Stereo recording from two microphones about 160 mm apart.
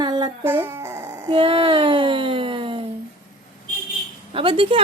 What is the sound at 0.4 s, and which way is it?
Dog, 15° right (ahead or behind).